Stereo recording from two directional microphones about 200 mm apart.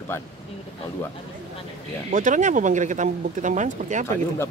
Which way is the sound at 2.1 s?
40° right (ahead or behind).